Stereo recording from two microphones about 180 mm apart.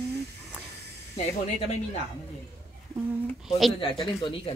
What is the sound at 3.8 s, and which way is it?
Speech, 30° left (ahead or behind).